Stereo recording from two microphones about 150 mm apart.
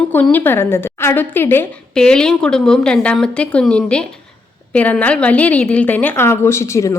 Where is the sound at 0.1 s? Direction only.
10° left (ahead or behind).